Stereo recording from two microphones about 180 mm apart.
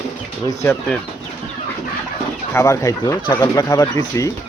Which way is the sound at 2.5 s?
15° left (ahead or behind).